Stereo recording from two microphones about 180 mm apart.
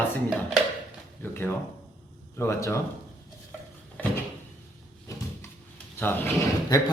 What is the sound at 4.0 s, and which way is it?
Door, 5° left (ahead or behind).